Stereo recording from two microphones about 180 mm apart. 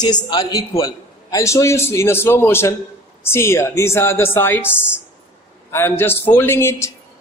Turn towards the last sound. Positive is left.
turn(degrees=15)  # may be behind; listen again after turning